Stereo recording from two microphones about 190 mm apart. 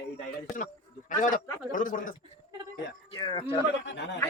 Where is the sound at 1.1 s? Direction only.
45° left (ahead or behind).